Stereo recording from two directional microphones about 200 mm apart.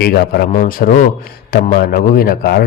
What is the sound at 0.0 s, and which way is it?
A man's voice, 50° left (ahead or behind).